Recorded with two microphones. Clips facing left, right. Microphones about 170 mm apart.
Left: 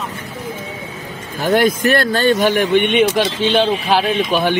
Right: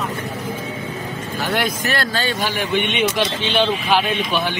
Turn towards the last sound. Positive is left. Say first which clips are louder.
# left 5 dB
turn(degrees=40)  # may be behind; listen again after turning